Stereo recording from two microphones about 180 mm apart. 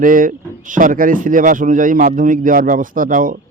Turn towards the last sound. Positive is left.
turn(degrees=-50)  # may be behind; listen again after turning